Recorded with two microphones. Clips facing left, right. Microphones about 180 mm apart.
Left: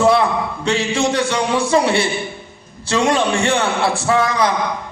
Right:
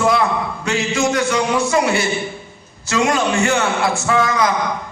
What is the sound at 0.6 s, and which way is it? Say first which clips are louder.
A man's voice: left 1 dB; 30° left (ahead or behind).